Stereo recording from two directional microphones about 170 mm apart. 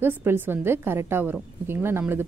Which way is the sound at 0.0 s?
10° right (ahead or behind).